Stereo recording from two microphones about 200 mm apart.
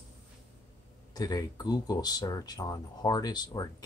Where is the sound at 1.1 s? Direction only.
20° left (ahead or behind).